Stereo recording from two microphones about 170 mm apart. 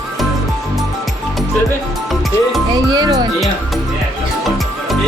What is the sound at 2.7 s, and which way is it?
Music, 25° right (ahead or behind).